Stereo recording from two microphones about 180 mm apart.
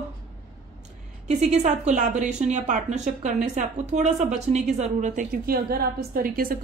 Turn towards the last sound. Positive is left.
turn(degrees=-55)  # may be behind; listen again after turning